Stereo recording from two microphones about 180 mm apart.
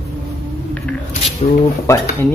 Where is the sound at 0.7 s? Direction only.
5° left (ahead or behind).